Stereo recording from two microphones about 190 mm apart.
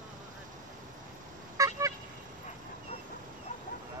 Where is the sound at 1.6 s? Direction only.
15° right (ahead or behind).